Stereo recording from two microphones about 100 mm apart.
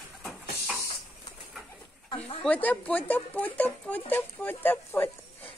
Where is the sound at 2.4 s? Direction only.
15° left (ahead or behind).